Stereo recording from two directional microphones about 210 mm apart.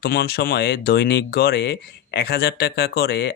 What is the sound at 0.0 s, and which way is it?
Speech, 50° left (ahead or behind).